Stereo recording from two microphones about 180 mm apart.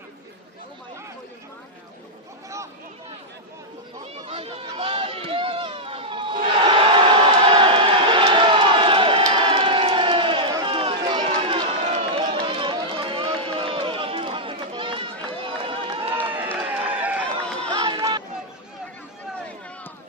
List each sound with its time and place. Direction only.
4.3 s run: 35° right (ahead or behind)
16.4 s run: 10° right (ahead or behind)
17.7 s a sound: 25° right (ahead or behind)